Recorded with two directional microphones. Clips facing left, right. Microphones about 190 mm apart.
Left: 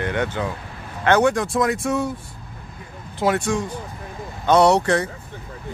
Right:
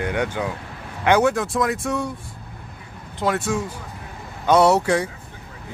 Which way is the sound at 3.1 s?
Centre (ahead or behind).